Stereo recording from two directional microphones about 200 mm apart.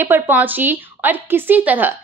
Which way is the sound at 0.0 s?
10° right (ahead or behind).